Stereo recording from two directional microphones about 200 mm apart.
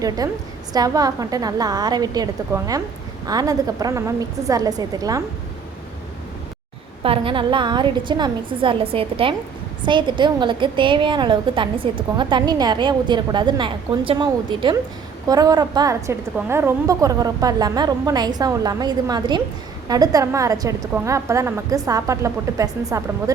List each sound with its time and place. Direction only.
0.7 s a woman's voice: 20° right (ahead or behind)
7.0 s a woman's voice: 25° right (ahead or behind)